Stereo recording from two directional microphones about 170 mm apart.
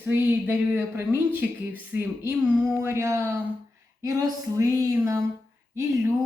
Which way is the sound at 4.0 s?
20° right (ahead or behind).